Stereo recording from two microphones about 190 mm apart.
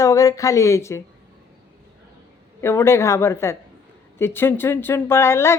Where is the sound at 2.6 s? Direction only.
15° left (ahead or behind).